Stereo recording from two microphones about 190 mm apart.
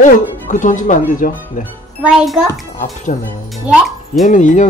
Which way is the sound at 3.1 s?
40° left (ahead or behind).